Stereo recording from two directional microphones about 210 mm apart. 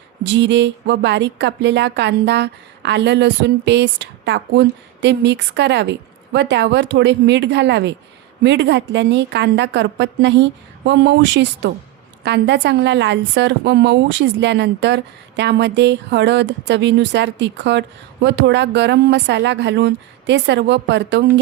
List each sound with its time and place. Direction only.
0.2 s a woman's voice: 55° right (ahead or behind)